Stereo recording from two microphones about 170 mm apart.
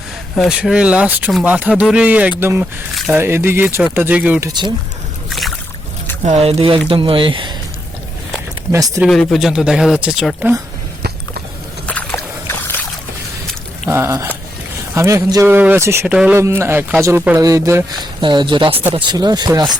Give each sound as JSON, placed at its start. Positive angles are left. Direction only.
{"t": 0.3, "sound": "speech", "side_deg": -5}
{"t": 5.3, "sound": "boat", "side_deg": 0}
{"t": 6.2, "sound": "speech", "side_deg": -35}
{"t": 9.0, "sound": "speech", "side_deg": 0}
{"t": 11.9, "sound": "boat", "side_deg": 10}
{"t": 13.9, "sound": "speech", "side_deg": -15}
{"t": 18.2, "sound": "speech", "side_deg": -30}